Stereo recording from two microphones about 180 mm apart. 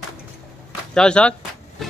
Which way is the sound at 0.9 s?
5° left (ahead or behind).